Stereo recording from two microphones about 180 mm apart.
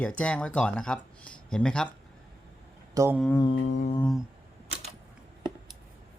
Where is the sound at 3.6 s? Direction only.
45° left (ahead or behind).